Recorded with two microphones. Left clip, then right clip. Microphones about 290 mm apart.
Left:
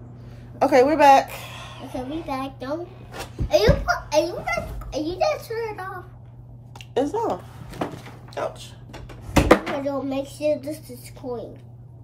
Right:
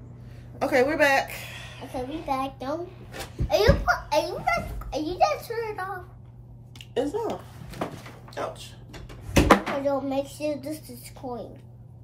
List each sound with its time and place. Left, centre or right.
0.6 s a woman's voice: centre
1.9 s a child's voice: centre
6.9 s a woman's voice: left
9.5 s a child's voice: centre